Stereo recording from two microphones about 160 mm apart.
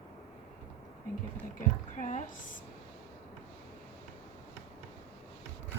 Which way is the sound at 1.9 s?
50° left (ahead or behind).